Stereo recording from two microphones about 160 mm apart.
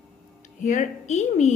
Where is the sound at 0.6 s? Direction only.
50° left (ahead or behind).